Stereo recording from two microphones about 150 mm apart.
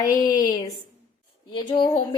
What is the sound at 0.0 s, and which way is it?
A woman's voice, 25° left (ahead or behind).